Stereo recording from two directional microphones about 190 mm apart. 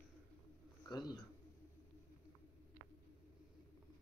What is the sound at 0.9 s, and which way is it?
Speech, 20° left (ahead or behind).